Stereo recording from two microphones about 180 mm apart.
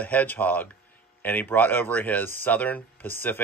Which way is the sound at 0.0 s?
10° left (ahead or behind).